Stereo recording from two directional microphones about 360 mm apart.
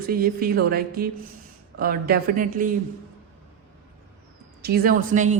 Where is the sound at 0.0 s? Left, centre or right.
Right.